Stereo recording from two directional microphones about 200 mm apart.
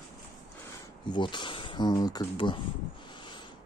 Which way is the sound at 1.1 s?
25° left (ahead or behind).